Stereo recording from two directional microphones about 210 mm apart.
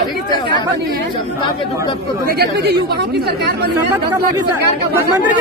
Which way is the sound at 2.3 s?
50° right (ahead or behind).